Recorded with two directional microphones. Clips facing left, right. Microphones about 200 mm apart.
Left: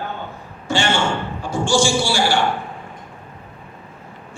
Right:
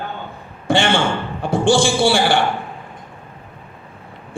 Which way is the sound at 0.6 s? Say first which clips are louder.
Right 4 dB; 55° right (ahead or behind).